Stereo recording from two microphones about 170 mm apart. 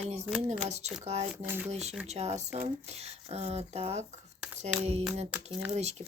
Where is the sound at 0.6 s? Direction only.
40° right (ahead or behind).